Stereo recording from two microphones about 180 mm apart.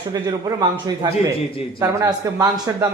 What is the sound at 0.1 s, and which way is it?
Speech, 20° right (ahead or behind).